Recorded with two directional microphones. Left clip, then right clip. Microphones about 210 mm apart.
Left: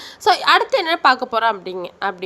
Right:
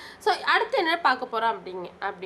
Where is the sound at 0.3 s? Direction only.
40° left (ahead or behind).